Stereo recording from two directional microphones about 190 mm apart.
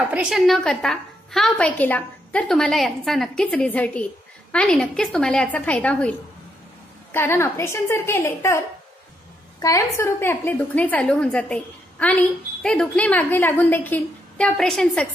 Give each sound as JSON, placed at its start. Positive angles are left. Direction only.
{"t": 0.1, "sound": "a woman's voice", "side_deg": -5}